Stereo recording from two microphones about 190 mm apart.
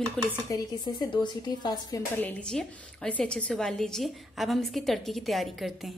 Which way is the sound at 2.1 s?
5° left (ahead or behind).